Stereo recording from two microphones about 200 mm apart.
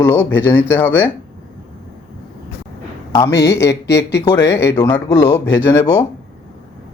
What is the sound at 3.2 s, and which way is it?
Speech, 15° left (ahead or behind).